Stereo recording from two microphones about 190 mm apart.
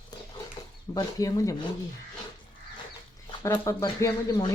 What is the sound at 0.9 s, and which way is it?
Speech, 20° left (ahead or behind).